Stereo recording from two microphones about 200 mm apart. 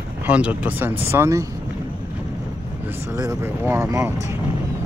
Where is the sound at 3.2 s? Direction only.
15° right (ahead or behind).